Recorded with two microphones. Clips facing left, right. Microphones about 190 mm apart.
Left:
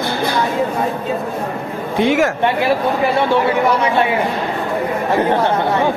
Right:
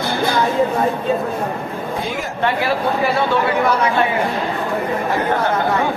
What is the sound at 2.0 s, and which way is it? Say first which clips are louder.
Speech: left 15 dB; 85° left.